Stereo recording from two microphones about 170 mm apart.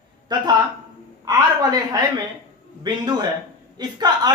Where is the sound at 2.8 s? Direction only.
25° right (ahead or behind).